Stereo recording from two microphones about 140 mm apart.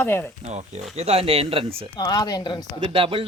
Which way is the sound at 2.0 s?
30° left (ahead or behind).